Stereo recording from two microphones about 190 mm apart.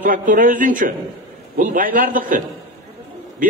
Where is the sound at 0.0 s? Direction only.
45° right (ahead or behind).